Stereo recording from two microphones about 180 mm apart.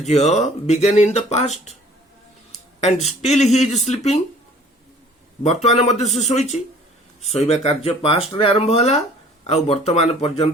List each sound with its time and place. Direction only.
0.0 s speech: 40° left (ahead or behind)
3.2 s speech: 40° left (ahead or behind)
5.6 s speech: 40° left (ahead or behind)